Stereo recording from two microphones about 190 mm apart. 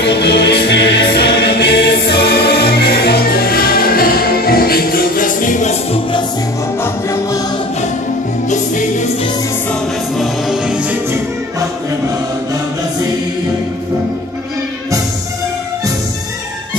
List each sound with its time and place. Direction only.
0.0 s music: 60° left (ahead or behind); by 5.8 s 40° left (ahead or behind)
6.8 s music: 15° left (ahead or behind)
8.5 s music: 40° left (ahead or behind)
9.7 s music: centre (ahead or behind)